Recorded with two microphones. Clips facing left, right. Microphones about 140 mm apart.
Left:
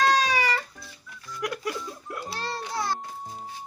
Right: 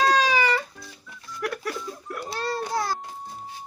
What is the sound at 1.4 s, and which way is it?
Giggle, 20° left (ahead or behind).